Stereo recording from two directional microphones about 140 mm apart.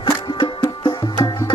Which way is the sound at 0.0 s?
35° left (ahead or behind).